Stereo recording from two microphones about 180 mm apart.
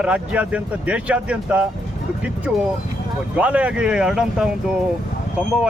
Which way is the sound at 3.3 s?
5° right (ahead or behind).